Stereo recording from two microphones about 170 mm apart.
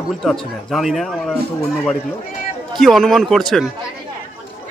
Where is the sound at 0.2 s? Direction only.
Centre (ahead or behind).